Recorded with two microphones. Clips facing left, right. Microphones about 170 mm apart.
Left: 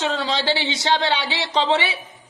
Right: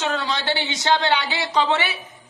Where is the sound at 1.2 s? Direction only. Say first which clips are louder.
Even; 25° left (ahead or behind).